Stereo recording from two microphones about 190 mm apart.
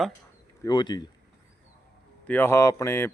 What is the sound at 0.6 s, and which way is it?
Speech, 20° left (ahead or behind).